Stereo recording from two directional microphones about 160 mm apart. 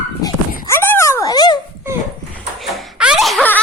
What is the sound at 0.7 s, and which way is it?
Dog, 15° left (ahead or behind).